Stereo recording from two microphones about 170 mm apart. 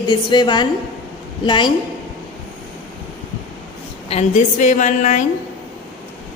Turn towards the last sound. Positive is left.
turn(degrees=45)  # may be behind; listen again after turning